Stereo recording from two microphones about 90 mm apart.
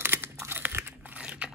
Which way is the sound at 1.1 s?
10° right (ahead or behind).